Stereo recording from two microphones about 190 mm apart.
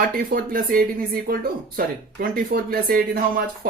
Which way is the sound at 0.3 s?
50° right (ahead or behind).